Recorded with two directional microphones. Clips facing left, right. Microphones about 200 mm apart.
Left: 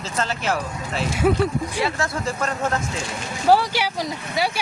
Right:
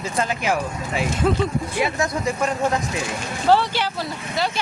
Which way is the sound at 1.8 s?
15° right (ahead or behind).